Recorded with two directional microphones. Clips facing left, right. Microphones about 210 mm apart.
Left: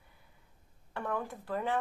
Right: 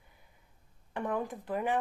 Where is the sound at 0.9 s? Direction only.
15° right (ahead or behind).